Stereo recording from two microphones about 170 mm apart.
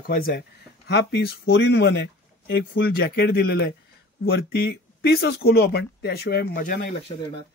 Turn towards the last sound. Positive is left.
turn(degrees=30)  # may be behind; listen again after turning